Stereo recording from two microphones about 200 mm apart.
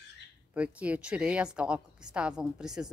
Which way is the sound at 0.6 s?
5° right (ahead or behind).